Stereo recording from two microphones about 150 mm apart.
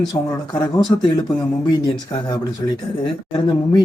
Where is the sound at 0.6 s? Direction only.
25° left (ahead or behind).